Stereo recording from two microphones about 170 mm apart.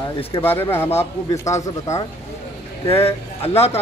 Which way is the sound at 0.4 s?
10° left (ahead or behind).